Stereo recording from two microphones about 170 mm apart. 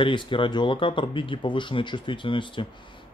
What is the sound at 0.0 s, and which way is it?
A man's voice, 30° left (ahead or behind).